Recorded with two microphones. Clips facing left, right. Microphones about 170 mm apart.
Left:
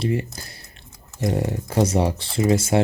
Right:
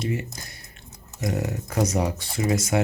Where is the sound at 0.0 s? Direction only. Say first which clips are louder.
Left 4 dB; 30° left (ahead or behind).